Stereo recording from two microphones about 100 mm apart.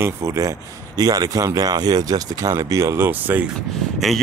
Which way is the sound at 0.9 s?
40° right (ahead or behind).